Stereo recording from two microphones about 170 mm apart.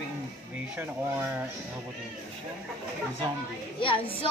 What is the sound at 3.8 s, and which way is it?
Speech, 30° left (ahead or behind).